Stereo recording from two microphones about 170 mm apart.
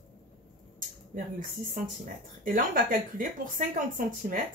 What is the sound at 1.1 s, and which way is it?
Speech, 50° right (ahead or behind).